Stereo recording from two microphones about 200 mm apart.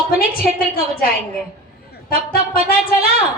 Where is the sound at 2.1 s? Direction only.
45° left (ahead or behind).